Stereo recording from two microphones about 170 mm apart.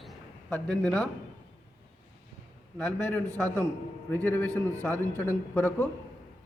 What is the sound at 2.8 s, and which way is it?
A man's voice, 5° left (ahead or behind).